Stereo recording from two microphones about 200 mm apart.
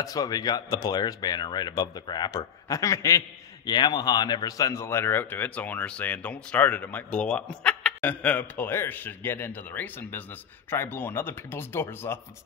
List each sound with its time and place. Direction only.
0.0 s speech: 15° left (ahead or behind)